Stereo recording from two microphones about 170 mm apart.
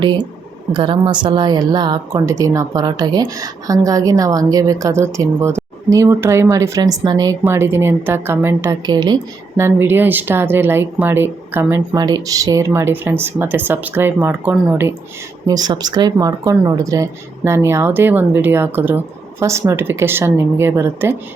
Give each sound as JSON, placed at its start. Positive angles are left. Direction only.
{"t": 0.7, "sound": "speech", "side_deg": -30}
{"t": 8.9, "sound": "speech", "side_deg": -25}
{"t": 11.9, "sound": "speech", "side_deg": -25}
{"t": 15.4, "sound": "speech", "side_deg": -25}